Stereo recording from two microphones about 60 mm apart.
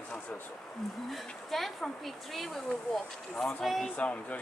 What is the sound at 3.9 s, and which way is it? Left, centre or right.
Speech, left.